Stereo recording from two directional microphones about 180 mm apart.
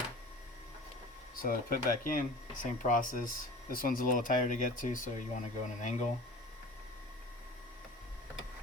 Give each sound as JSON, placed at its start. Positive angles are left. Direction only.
{"t": 1.4, "sound": "speech", "side_deg": 50}